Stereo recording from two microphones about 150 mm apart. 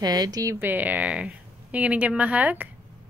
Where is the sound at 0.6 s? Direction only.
10° right (ahead or behind).